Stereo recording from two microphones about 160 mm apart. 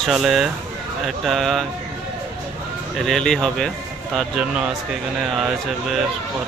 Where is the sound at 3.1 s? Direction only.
5° left (ahead or behind).